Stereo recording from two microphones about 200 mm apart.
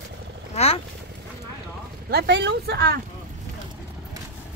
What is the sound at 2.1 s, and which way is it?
Speech, 60° right (ahead or behind).